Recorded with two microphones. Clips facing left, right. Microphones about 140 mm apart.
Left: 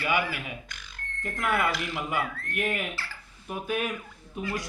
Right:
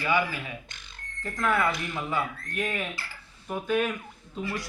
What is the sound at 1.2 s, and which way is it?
Speech, 15° left (ahead or behind).